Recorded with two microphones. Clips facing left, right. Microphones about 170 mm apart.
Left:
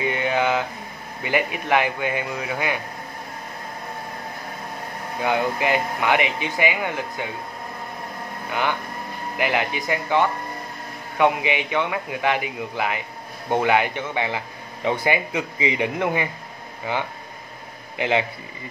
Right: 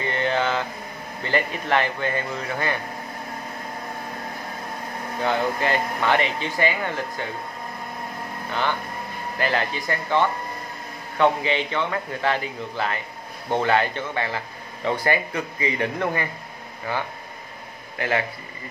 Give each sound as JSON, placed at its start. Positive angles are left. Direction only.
{"t": 0.0, "sound": "a sound", "side_deg": 10}
{"t": 1.2, "sound": "speech", "side_deg": 10}
{"t": 5.2, "sound": "speech", "side_deg": 10}
{"t": 8.5, "sound": "speech", "side_deg": 10}